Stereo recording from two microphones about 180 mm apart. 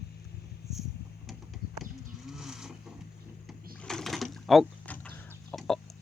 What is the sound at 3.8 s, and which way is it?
Mechanisms, 5° left (ahead or behind).